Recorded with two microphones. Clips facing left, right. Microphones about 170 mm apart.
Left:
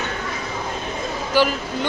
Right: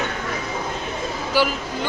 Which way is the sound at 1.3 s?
10° right (ahead or behind).